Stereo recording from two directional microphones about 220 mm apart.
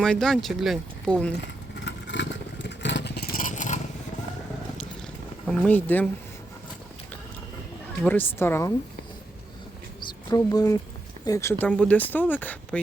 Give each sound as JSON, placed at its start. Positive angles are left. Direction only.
{"t": 0.0, "sound": "speech", "side_deg": 5}
{"t": 1.7, "sound": "vehicle", "side_deg": 55}
{"t": 5.5, "sound": "speech", "side_deg": 5}
{"t": 8.0, "sound": "speech", "side_deg": 10}
{"t": 10.2, "sound": "speech", "side_deg": 15}